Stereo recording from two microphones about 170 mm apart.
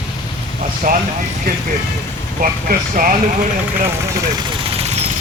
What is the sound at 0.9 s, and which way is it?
Speech, 55° right (ahead or behind).